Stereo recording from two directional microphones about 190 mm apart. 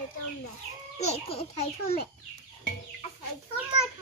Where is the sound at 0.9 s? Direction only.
30° left (ahead or behind).